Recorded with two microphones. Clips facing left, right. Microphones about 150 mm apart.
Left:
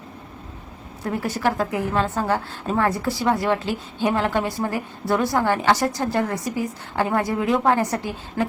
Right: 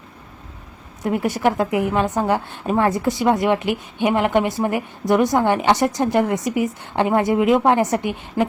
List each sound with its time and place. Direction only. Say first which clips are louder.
1.0 s a woman's voice: right 4 dB; 20° right (ahead or behind)